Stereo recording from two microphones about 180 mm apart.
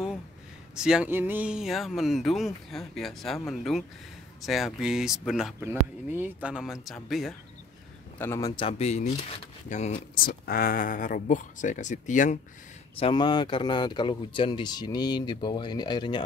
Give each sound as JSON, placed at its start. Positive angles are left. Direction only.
{"t": 0.7, "sound": "speech", "side_deg": -5}
{"t": 8.2, "sound": "a man's voice", "side_deg": 15}
{"t": 8.6, "sound": "speech", "side_deg": 35}
{"t": 13.0, "sound": "a man's voice", "side_deg": 25}